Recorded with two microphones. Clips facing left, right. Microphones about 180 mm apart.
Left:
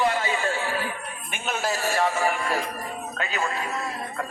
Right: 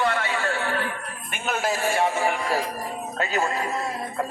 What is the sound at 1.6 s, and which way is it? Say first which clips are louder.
Speech: right 2 dB; 15° right (ahead or behind).